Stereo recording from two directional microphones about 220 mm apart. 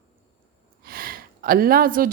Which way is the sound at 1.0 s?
40° right (ahead or behind).